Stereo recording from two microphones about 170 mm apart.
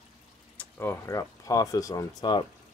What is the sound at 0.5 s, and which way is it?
Speech, 10° left (ahead or behind).